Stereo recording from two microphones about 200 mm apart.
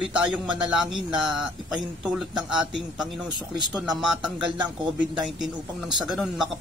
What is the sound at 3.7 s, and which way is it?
Speech, centre (ahead or behind).